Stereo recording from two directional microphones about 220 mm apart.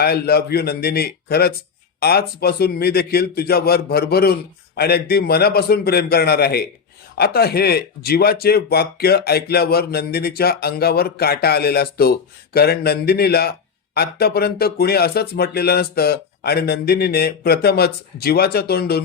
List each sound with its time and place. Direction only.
0.0 s speech: 45° left (ahead or behind)